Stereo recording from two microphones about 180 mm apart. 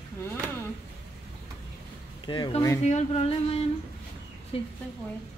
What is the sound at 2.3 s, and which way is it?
Speech, 25° left (ahead or behind).